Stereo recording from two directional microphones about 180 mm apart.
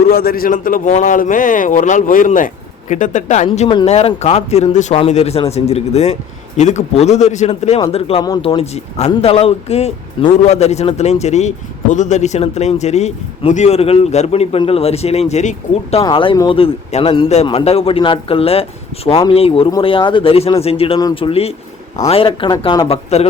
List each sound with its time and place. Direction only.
0.1 s a man's voice: 55° left (ahead or behind); by 16.0 s 40° left (ahead or behind)
16.0 s speech: 25° left (ahead or behind)